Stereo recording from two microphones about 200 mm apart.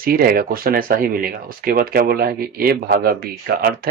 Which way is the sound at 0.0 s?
45° right (ahead or behind).